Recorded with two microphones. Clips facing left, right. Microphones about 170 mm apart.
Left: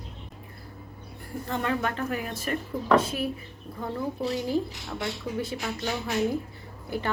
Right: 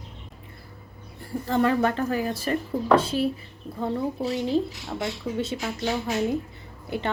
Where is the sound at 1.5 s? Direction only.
35° right (ahead or behind).